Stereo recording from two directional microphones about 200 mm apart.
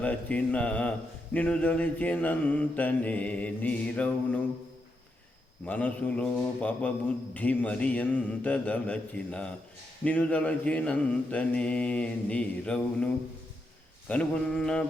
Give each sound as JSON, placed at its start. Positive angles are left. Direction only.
{"t": 0.0, "sound": "mantra", "side_deg": 5}
{"t": 5.6, "sound": "mantra", "side_deg": 5}
{"t": 14.1, "sound": "mantra", "side_deg": 5}